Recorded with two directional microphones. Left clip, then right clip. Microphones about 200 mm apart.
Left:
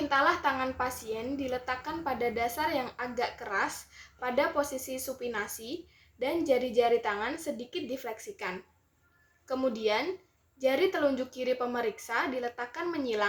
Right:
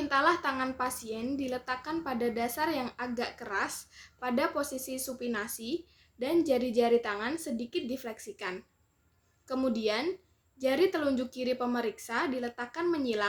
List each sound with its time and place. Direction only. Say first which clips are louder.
0.1 s a woman's voice: left 1 dB; 55° right (ahead or behind)